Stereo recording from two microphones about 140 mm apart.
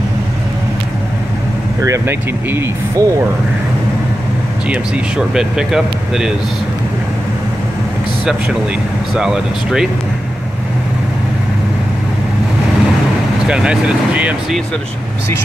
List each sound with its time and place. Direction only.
1.8 s speech: 20° right (ahead or behind)
4.6 s speech: 10° right (ahead or behind)
9.1 s speech: 5° right (ahead or behind)
13.5 s speech: 5° right (ahead or behind)